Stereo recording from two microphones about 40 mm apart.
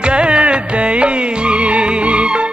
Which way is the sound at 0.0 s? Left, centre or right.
Right.